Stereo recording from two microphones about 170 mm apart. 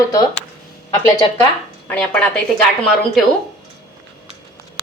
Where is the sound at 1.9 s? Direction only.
10° left (ahead or behind).